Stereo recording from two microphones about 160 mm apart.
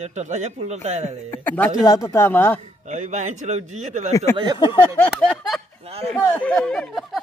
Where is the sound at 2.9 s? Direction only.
50° right (ahead or behind).